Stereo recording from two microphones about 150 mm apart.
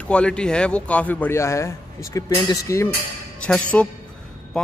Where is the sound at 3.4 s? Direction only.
10° left (ahead or behind).